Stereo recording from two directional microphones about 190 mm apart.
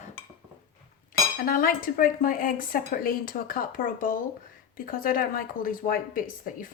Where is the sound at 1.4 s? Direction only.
45° left (ahead or behind).